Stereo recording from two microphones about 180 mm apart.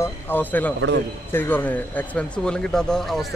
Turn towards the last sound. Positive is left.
turn(degrees=0)  # may be behind; listen again after turning